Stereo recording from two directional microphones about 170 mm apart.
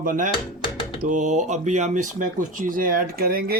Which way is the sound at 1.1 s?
45° right (ahead or behind).